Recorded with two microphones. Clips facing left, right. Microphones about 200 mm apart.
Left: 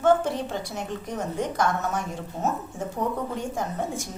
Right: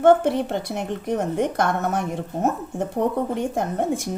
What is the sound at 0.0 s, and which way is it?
A woman's voice, 60° right (ahead or behind).